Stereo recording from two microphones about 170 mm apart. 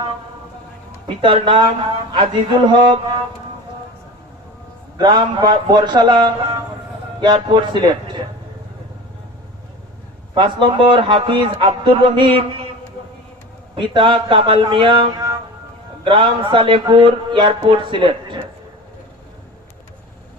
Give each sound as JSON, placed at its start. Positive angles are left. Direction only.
{"t": 1.0, "sound": "speech", "side_deg": -30}
{"t": 4.9, "sound": "speech", "side_deg": -25}
{"t": 10.3, "sound": "speech", "side_deg": -30}
{"t": 13.7, "sound": "speech", "side_deg": -30}